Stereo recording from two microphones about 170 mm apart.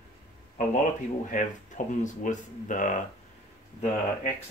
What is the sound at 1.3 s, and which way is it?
Speech, 50° left (ahead or behind).